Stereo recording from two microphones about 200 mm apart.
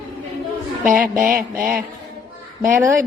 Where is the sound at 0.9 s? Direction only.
45° right (ahead or behind).